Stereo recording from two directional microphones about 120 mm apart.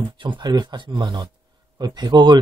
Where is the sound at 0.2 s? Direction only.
40° right (ahead or behind).